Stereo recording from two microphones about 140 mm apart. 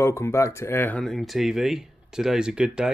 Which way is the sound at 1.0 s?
Centre (ahead or behind).